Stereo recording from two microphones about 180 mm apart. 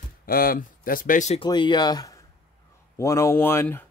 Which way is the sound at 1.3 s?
25° left (ahead or behind).